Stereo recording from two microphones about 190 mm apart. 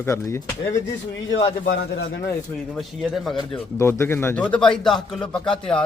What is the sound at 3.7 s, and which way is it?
A man's voice, 15° left (ahead or behind).